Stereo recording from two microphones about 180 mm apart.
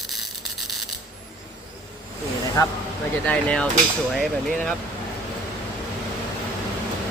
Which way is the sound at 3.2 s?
5° left (ahead or behind).